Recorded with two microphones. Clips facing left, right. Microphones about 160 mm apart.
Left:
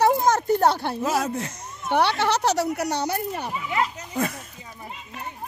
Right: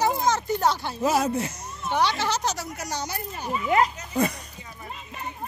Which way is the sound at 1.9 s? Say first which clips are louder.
Left 3 dB; 60° left (ahead or behind).